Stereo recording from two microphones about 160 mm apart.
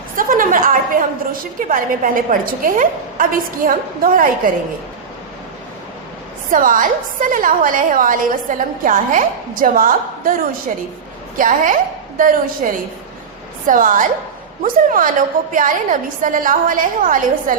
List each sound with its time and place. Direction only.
0.2 s a woman's voice: 60° right (ahead or behind)
6.5 s a woman's voice: 60° right (ahead or behind)